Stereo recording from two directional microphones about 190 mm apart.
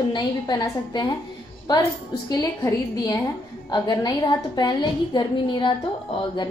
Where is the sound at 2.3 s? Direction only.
15° left (ahead or behind).